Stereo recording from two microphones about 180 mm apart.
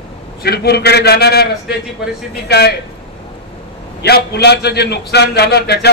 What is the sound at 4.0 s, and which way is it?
A man's voice, 65° left (ahead or behind).